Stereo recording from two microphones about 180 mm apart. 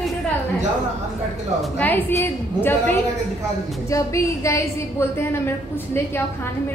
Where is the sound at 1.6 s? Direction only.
10° left (ahead or behind).